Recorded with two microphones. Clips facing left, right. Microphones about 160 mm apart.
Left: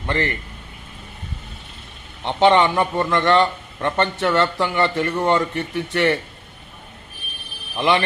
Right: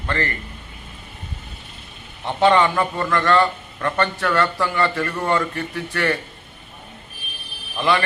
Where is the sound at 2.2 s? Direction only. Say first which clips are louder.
Left 1 dB; 20° left (ahead or behind).